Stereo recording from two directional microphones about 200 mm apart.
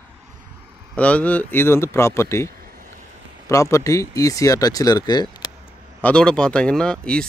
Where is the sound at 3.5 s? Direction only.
15° left (ahead or behind).